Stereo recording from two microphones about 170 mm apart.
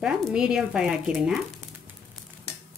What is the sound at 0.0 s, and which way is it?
Speech, 5° right (ahead or behind).